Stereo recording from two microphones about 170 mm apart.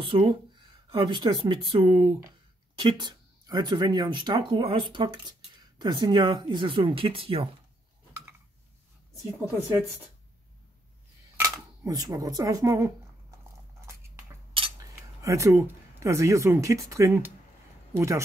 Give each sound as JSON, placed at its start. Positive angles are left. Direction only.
{"t": 0.0, "sound": "speech", "side_deg": -30}
{"t": 11.3, "sound": "speech", "side_deg": -20}
{"t": 13.7, "sound": "a sound", "side_deg": -15}
{"t": 15.2, "sound": "speech", "side_deg": -15}